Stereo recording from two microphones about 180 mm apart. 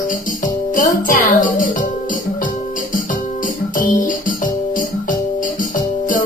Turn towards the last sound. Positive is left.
turn(degrees=50)  # may be behind; listen again after turning